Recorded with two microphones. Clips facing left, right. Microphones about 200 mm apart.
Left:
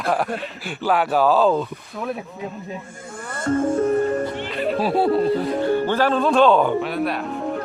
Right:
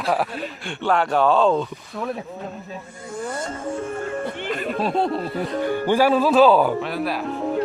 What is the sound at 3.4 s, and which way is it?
Music, 40° left (ahead or behind).